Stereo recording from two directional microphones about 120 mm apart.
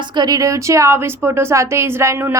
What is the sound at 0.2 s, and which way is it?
A woman's voice, 30° right (ahead or behind).